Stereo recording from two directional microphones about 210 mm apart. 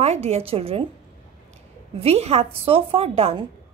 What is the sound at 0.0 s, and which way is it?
Speech, 30° right (ahead or behind).